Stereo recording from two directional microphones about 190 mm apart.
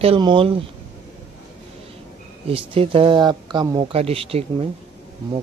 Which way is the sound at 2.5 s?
30° right (ahead or behind).